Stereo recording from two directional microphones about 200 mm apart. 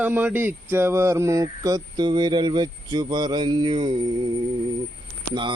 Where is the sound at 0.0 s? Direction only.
10° right (ahead or behind).